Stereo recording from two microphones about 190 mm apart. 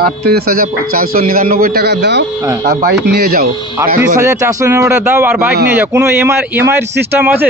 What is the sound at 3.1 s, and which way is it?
Speech, 50° right (ahead or behind).